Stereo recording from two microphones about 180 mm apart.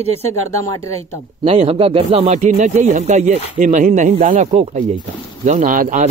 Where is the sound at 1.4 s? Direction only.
30° right (ahead or behind).